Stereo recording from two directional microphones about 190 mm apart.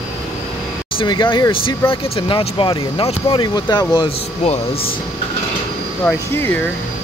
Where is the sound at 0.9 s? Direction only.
25° left (ahead or behind).